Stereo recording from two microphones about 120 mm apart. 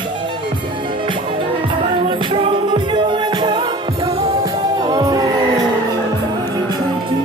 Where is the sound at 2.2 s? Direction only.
45° right (ahead or behind).